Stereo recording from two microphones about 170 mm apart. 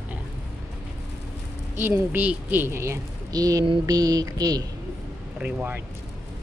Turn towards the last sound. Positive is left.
turn(degrees=-10)  # may be behind; listen again after turning